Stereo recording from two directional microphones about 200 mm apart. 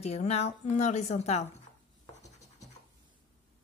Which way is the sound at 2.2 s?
15° left (ahead or behind).